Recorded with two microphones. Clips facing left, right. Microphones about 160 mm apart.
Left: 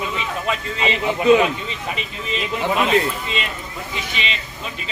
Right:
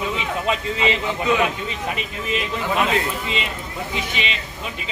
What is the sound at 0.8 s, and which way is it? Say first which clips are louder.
Speech: left 6 dB; 25° left (ahead or behind).